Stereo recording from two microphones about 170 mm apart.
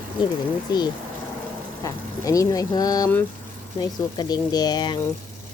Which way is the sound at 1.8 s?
20° left (ahead or behind).